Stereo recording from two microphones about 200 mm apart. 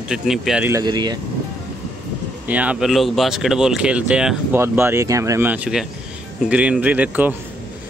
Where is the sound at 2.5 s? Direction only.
5° right (ahead or behind).